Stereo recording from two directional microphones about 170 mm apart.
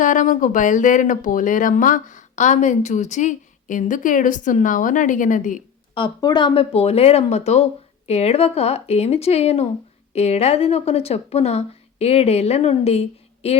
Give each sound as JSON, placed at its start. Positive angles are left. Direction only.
{"t": 0.0, "sound": "speech", "side_deg": 50}
{"t": 6.2, "sound": "speech", "side_deg": 30}